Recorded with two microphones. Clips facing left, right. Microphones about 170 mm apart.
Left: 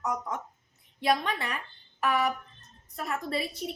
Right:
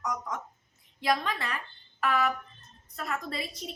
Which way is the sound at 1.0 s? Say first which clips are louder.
Left 2 dB; 20° left (ahead or behind).